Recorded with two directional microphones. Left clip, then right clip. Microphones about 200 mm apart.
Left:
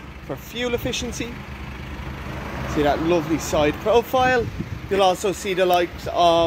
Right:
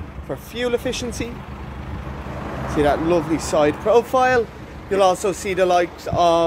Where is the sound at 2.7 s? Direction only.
15° left (ahead or behind).